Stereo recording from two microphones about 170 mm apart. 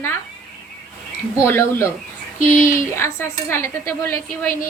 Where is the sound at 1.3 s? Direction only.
15° left (ahead or behind).